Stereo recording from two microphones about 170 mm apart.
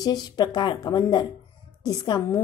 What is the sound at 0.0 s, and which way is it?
A woman's voice, 25° left (ahead or behind).